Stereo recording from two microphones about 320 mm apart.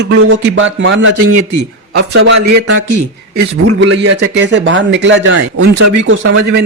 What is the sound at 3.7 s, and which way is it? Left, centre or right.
Speech, right.